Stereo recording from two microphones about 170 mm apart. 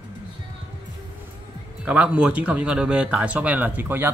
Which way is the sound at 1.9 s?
5° right (ahead or behind).